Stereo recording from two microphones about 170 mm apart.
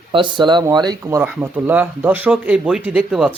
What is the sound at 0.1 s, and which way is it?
Speech, 30° right (ahead or behind).